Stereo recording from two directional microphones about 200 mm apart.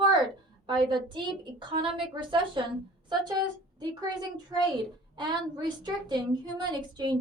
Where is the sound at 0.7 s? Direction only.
20° right (ahead or behind).